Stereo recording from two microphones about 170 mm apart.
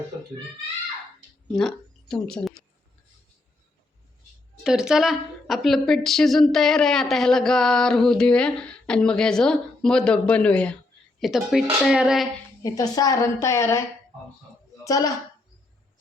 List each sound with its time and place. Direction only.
1.5 s speech: 5° left (ahead or behind)
4.6 s a woman's voice: 5° right (ahead or behind)
12.6 s a woman's voice: 20° left (ahead or behind)
14.8 s a woman's voice: 20° left (ahead or behind)